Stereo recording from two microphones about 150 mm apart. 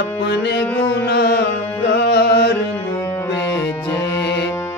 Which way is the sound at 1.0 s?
90° left.